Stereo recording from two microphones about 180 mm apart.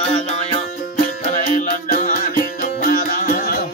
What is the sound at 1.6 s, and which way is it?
Music, 45° left (ahead or behind).